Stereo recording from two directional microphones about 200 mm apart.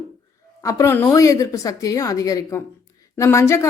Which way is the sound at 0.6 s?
15° left (ahead or behind).